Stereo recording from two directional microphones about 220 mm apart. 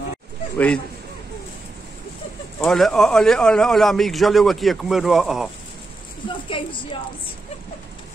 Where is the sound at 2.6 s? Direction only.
Centre (ahead or behind).